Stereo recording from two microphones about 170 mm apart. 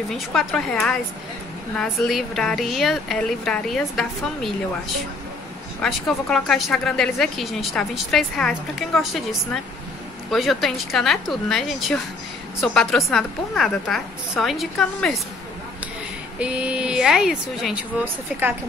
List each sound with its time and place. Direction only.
0.1 s speech: centre (ahead or behind)
5.8 s speech: 5° left (ahead or behind)
16.3 s speech: 5° right (ahead or behind)